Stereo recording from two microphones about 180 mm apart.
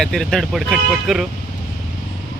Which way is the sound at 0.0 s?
5° left (ahead or behind).